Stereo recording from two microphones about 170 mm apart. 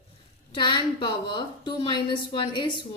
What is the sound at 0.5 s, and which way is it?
A woman's voice, 30° left (ahead or behind).